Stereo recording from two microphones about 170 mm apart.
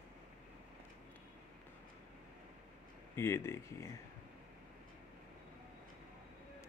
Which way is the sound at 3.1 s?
15° left (ahead or behind).